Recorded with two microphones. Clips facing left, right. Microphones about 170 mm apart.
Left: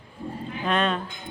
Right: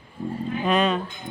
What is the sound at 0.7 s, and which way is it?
Speech, centre (ahead or behind).